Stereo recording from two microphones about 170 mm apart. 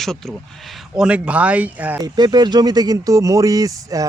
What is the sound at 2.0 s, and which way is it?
Speech, 25° right (ahead or behind).